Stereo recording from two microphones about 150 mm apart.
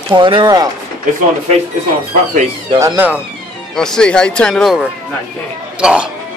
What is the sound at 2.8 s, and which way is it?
Speech, 15° right (ahead or behind).